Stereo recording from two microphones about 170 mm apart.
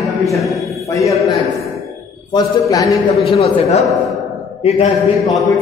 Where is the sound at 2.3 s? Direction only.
20° left (ahead or behind).